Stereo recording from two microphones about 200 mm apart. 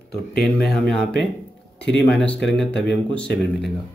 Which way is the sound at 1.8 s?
60° left (ahead or behind).